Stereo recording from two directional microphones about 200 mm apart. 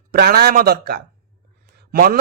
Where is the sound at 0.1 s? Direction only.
50° right (ahead or behind).